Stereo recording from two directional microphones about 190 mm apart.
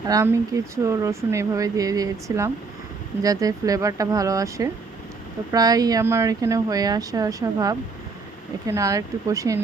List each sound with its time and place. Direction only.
0.1 s speech: 15° right (ahead or behind)